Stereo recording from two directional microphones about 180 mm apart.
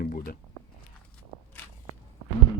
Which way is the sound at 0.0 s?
55° left (ahead or behind).